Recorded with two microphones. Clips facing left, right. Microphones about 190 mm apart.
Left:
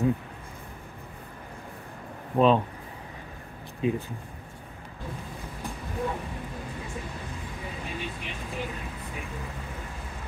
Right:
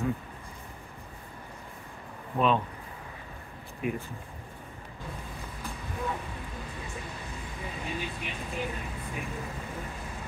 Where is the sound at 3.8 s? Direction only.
25° left (ahead or behind).